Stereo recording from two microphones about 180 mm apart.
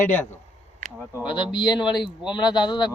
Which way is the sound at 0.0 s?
10° left (ahead or behind).